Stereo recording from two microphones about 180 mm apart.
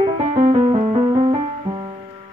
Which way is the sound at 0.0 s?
35° right (ahead or behind).